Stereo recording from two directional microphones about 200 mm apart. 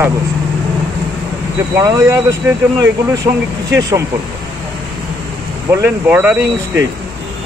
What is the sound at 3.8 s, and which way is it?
Speech, 15° right (ahead or behind).